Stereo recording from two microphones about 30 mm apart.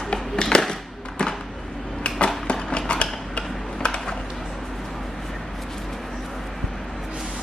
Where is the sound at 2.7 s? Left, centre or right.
Left.